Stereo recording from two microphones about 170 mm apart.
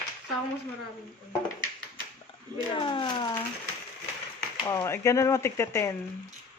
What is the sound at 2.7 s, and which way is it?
Speech, 30° left (ahead or behind).